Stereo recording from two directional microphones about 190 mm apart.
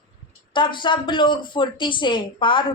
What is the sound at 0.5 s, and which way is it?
Speech, 25° left (ahead or behind).